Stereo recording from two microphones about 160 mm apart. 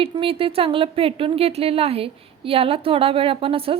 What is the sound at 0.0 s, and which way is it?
Speech, 35° right (ahead or behind).